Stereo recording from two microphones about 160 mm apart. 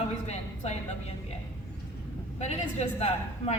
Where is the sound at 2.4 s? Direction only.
45° left (ahead or behind).